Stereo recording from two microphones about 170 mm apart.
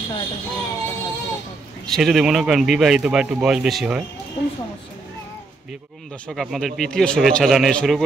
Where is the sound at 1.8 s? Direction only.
Centre (ahead or behind).